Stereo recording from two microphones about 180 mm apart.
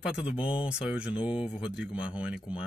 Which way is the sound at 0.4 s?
30° left (ahead or behind).